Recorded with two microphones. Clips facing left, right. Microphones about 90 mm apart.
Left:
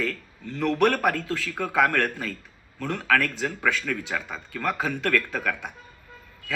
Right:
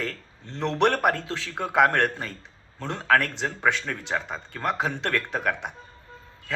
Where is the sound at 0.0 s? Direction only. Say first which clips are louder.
Left 3 dB; 30° right (ahead or behind).